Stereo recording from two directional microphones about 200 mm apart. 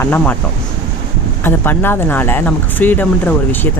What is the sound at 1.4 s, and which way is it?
Speech, 10° left (ahead or behind).